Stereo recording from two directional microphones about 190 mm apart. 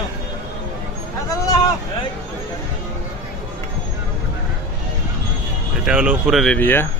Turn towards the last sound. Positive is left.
turn(degrees=10)  # may be behind; listen again after turning